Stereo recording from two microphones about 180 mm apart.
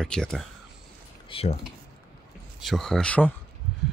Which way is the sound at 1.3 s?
35° left (ahead or behind).